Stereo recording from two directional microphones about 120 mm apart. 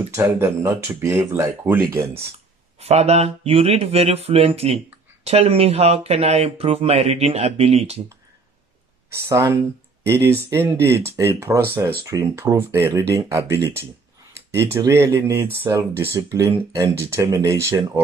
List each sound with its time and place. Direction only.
0.1 s speech: 25° right (ahead or behind)
2.8 s speech: 60° right (ahead or behind)
9.1 s speech: 25° right (ahead or behind)